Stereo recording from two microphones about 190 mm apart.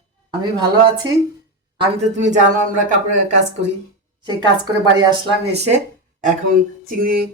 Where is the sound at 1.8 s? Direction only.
35° right (ahead or behind).